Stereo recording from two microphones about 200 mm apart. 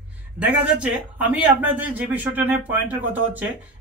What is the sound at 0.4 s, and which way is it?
Speech, 5° right (ahead or behind).